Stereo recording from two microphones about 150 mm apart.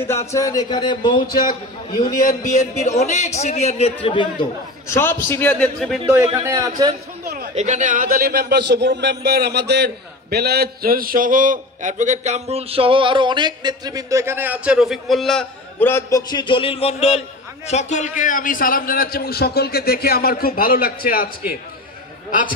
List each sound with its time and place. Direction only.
0.3 s a man's voice: 20° left (ahead or behind)
2.0 s speech: 65° left (ahead or behind); by 3.9 s 45° left (ahead or behind)
4.0 s speech: 35° left (ahead or behind)
4.8 s a man's voice: 15° left (ahead or behind)
6.0 s a man's voice: 25° right (ahead or behind)
7.5 s a man's voice: 55° right (ahead or behind); by 15.4 s centre (ahead or behind)
15.8 s a man's voice: 20° left (ahead or behind); by 21.3 s 75° left (ahead or behind)